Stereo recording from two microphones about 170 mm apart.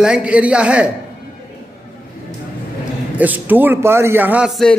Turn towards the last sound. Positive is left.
turn(degrees=0)  # may be behind; listen again after turning